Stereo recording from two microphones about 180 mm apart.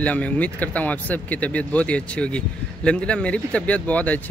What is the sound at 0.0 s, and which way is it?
Speech, 5° left (ahead or behind).